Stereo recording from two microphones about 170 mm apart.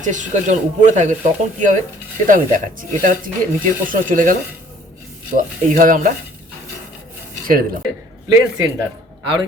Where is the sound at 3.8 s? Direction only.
50° right (ahead or behind).